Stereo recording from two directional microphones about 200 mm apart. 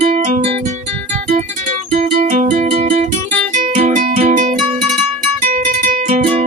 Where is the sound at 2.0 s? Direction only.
40° right (ahead or behind).